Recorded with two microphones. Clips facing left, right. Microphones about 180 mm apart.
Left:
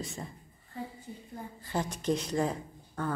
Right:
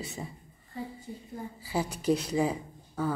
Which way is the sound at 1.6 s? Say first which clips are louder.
Right 3 dB; 5° right (ahead or behind).